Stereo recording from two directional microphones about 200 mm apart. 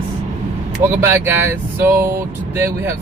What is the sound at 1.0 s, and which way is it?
Speech, 10° right (ahead or behind).